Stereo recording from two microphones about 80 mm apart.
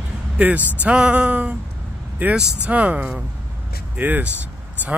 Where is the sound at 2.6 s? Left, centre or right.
Centre.